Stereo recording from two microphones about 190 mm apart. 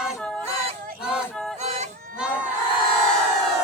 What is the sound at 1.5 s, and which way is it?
Music, 35° right (ahead or behind).